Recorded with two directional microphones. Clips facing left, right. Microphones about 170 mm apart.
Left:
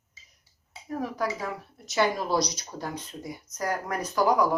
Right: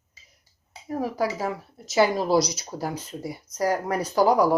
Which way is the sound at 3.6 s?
30° right (ahead or behind).